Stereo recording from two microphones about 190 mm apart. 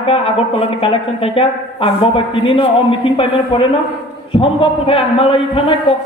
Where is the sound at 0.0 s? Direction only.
30° left (ahead or behind).